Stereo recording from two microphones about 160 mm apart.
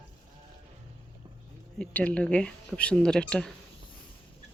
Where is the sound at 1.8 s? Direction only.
10° left (ahead or behind).